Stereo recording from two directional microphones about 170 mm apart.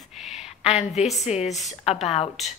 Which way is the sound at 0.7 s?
40° left (ahead or behind).